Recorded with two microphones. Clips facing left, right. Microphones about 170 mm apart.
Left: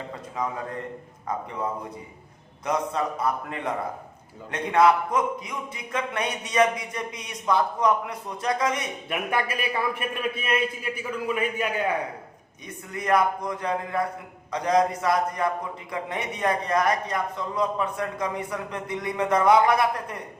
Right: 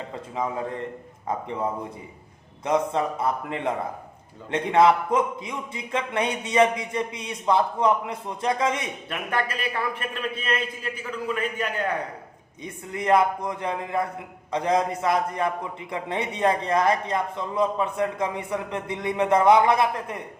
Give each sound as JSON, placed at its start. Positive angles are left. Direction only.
{"t": 1.3, "sound": "a man's voice", "side_deg": -25}
{"t": 2.6, "sound": "a man's voice", "side_deg": -25}
{"t": 9.0, "sound": "a man's voice", "side_deg": 10}
{"t": 12.6, "sound": "a man's voice", "side_deg": -25}